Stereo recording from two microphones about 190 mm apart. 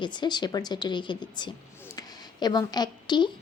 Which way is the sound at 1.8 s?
20° left (ahead or behind).